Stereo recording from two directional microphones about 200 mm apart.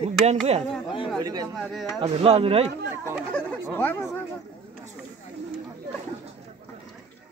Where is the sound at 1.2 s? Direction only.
20° right (ahead or behind).